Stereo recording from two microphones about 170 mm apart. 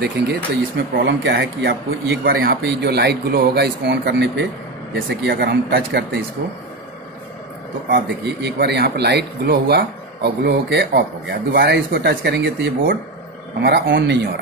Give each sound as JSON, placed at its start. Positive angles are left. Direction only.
{"t": 0.0, "sound": "speech", "side_deg": -75}
{"t": 5.2, "sound": "speech", "side_deg": -75}
{"t": 7.9, "sound": "speech", "side_deg": -75}
{"t": 13.6, "sound": "speech", "side_deg": -75}